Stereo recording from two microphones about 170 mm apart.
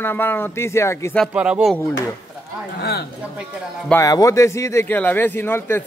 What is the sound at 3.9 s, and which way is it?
A man's voice, 20° left (ahead or behind).